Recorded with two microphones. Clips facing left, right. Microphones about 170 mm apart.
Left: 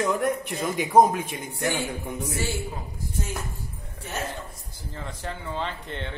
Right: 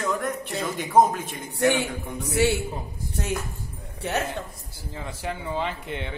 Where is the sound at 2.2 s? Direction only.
70° right (ahead or behind).